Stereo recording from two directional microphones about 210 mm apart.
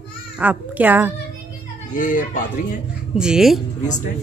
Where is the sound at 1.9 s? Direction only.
40° left (ahead or behind).